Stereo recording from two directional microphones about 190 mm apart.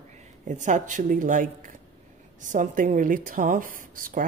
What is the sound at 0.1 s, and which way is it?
A woman's voice, 40° right (ahead or behind).